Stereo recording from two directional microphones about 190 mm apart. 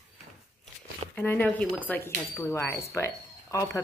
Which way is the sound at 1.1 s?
10° left (ahead or behind).